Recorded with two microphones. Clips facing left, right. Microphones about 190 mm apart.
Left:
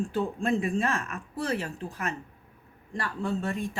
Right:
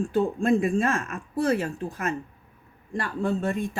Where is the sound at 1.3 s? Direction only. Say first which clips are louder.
Right 7 dB; 50° right (ahead or behind).